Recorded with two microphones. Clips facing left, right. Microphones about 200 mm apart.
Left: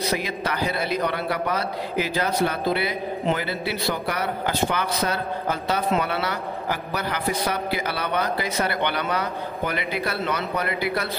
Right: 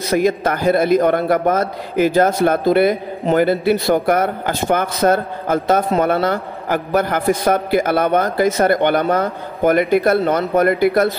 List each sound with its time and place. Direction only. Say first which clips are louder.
0.1 s a man's voice: right 10 dB; 45° right (ahead or behind)